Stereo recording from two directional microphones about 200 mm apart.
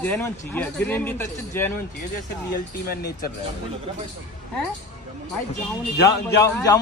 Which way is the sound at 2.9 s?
50° left (ahead or behind).